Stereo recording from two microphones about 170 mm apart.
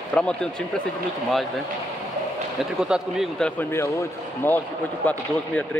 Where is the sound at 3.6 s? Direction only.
15° left (ahead or behind).